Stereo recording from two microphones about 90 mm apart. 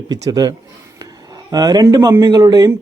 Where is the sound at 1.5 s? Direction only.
45° right (ahead or behind).